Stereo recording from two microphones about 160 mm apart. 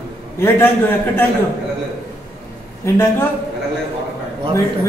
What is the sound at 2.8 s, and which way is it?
Speech, 15° left (ahead or behind).